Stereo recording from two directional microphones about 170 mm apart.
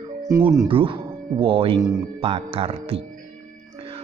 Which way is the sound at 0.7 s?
30° right (ahead or behind).